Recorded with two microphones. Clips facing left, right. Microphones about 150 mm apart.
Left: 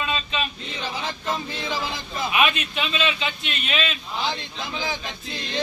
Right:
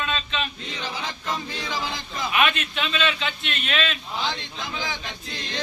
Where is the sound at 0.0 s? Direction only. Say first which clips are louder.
Left 1 dB; 10° left (ahead or behind).